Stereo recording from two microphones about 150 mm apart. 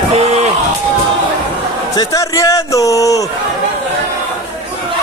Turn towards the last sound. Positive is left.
turn(degrees=20)  # may be behind; listen again after turning